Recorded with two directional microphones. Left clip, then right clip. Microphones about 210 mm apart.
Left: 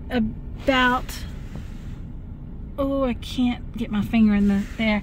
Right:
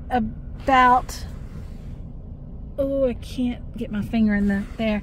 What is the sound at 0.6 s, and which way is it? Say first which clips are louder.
Speech: right 4 dB; 35° left (ahead or behind).